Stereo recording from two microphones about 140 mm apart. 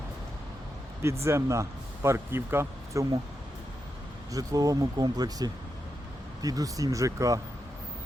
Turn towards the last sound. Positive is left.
turn(degrees=-25)  # may be behind; listen again after turning